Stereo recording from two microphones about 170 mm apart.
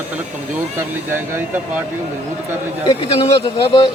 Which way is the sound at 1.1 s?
15° right (ahead or behind).